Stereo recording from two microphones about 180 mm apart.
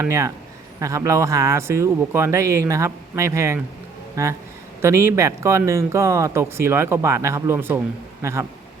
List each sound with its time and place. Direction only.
0.0 s speech: 15° right (ahead or behind)